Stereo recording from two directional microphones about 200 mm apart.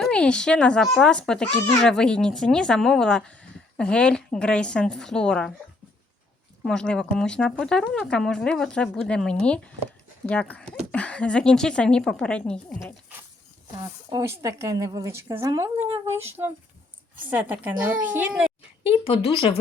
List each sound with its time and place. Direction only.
0.0 s speech: 5° left (ahead or behind)
6.6 s speech: 5° left (ahead or behind)
14.1 s a woman's voice: 15° right (ahead or behind)
18.8 s speech: 25° left (ahead or behind)